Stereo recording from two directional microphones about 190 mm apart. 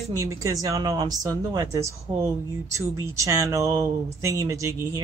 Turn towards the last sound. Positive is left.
turn(degrees=-15)  # may be behind; listen again after turning